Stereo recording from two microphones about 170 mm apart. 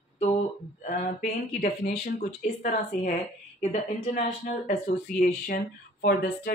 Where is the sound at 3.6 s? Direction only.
45° left (ahead or behind).